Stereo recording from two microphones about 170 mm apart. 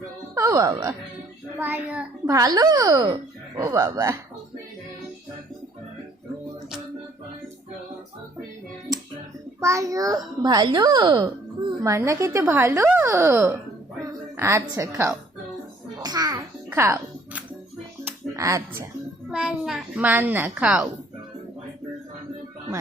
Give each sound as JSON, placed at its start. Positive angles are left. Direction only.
{"t": 0.3, "sound": "a child's voice", "side_deg": -20}
{"t": 2.2, "sound": "speech", "side_deg": -20}
{"t": 9.6, "sound": "a child's voice", "side_deg": -20}
{"t": 16.0, "sound": "babbling", "side_deg": -20}
{"t": 16.6, "sound": "music", "side_deg": -15}
{"t": 19.3, "sound": "a child's voice", "side_deg": -5}